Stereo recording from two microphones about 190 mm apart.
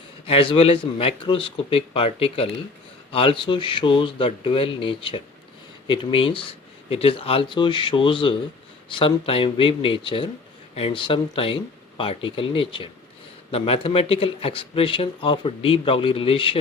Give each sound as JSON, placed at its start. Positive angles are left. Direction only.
{"t": 0.3, "sound": "speech", "side_deg": 30}